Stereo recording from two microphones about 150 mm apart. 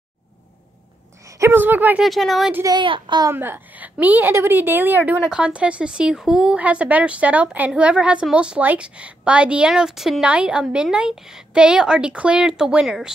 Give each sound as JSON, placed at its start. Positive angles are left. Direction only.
{"t": 1.2, "sound": "speech", "side_deg": -15}
{"t": 2.0, "sound": "speech", "side_deg": 0}
{"t": 2.5, "sound": "speech", "side_deg": -25}
{"t": 3.3, "sound": "speech", "side_deg": -15}